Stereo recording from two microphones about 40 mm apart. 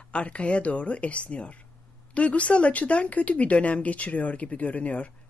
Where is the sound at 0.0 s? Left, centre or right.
Left.